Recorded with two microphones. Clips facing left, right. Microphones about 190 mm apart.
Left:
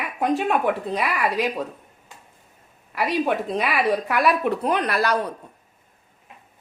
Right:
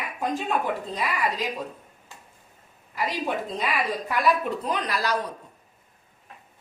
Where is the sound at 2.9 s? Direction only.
65° left (ahead or behind).